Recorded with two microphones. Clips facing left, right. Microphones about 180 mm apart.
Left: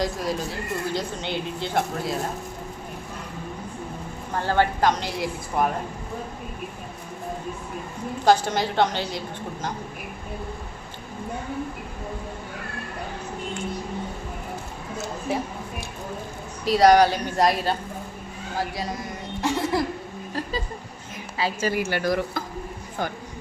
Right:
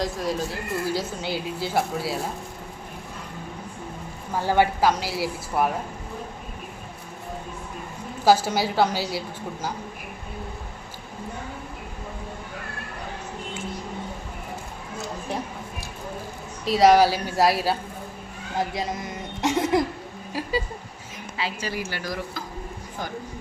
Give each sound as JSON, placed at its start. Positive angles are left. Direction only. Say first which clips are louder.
{"t": 0.0, "sound": "speech", "louder": "even", "side_deg": 0}
{"t": 4.3, "sound": "a woman's voice", "louder": "right 1 dB", "side_deg": -10}
{"t": 8.2, "sound": "a woman's voice", "louder": "even", "side_deg": -5}
{"t": 15.3, "sound": "speech", "louder": "left 4 dB", "side_deg": 5}
{"t": 16.6, "sound": "speech", "louder": "even", "side_deg": 0}
{"t": 18.7, "sound": "a sound", "louder": "right 1 dB", "side_deg": -20}
{"t": 20.3, "sound": "a woman's voice", "louder": "even", "side_deg": -10}
{"t": 21.3, "sound": "a woman's voice", "louder": "left 5 dB", "side_deg": 40}
{"t": 21.7, "sound": "speech", "louder": "left 7 dB", "side_deg": 60}